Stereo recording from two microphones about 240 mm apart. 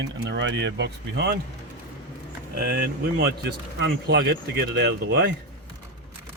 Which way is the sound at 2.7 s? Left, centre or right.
Right.